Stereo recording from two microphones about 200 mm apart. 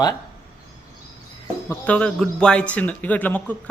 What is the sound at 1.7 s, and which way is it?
Speech, 5° left (ahead or behind).